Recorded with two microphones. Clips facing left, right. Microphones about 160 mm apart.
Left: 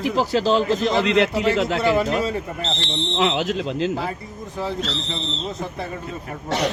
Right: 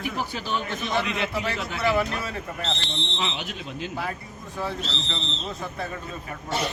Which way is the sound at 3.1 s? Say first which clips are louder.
Left 13 dB; 75° left (ahead or behind).